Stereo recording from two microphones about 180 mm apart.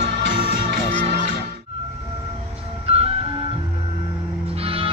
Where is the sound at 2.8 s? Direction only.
35° right (ahead or behind).